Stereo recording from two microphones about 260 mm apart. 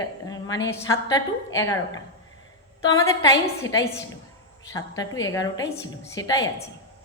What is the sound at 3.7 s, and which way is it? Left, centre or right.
A woman's voice, centre.